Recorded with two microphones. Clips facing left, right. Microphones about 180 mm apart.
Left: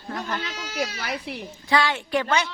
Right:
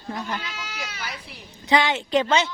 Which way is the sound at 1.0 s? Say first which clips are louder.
Left 6 dB; 70° left (ahead or behind).